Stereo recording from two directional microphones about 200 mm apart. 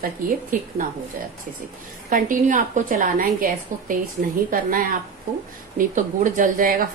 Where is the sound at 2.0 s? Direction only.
40° right (ahead or behind).